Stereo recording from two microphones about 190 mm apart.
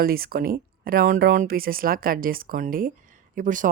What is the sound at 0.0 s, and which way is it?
Speech, 50° right (ahead or behind).